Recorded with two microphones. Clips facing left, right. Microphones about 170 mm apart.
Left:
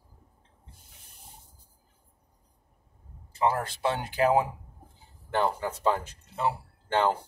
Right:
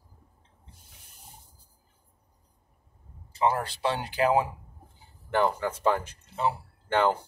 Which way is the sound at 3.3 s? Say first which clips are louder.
Right 1 dB; 50° left (ahead or behind).